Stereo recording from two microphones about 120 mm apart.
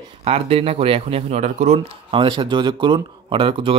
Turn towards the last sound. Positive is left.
turn(degrees=-50)  # may be behind; listen again after turning